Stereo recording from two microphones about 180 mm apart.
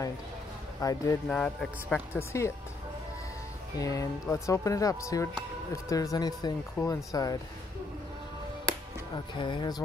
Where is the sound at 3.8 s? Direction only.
20° left (ahead or behind).